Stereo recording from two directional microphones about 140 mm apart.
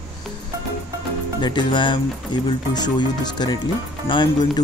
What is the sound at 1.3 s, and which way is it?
Speech, 30° left (ahead or behind).